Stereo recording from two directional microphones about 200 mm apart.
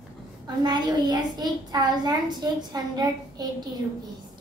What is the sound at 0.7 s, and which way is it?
A child's voice, 20° right (ahead or behind).